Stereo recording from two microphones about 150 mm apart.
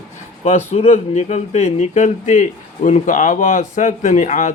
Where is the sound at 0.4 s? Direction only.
45° left (ahead or behind).